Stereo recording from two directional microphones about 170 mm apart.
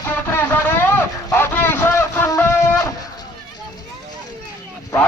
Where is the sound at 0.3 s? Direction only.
10° left (ahead or behind).